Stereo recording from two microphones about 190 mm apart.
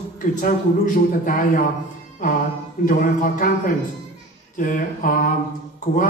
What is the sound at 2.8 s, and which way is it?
Speech, 45° left (ahead or behind).